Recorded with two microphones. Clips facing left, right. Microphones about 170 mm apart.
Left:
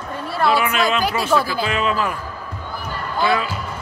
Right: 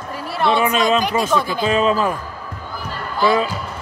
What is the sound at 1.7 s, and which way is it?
Speech, 35° right (ahead or behind).